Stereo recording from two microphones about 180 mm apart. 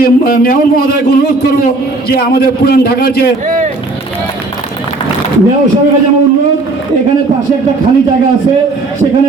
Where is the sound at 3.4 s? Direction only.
45° right (ahead or behind).